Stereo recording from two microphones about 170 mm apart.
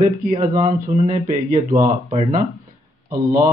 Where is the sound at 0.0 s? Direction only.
45° right (ahead or behind).